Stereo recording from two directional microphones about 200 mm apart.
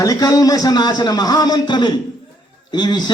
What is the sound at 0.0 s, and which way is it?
A man's voice, 15° left (ahead or behind).